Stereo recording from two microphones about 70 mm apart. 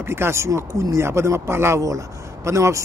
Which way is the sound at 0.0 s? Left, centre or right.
Right.